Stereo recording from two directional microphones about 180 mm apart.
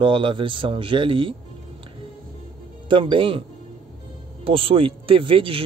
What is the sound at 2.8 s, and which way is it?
Speech, 25° right (ahead or behind).